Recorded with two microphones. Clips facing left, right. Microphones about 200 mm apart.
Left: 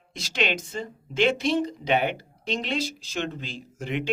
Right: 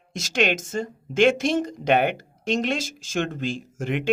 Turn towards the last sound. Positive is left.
turn(degrees=-50)  # may be behind; listen again after turning